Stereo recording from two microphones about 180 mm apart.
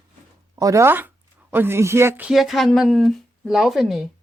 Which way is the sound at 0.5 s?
20° right (ahead or behind).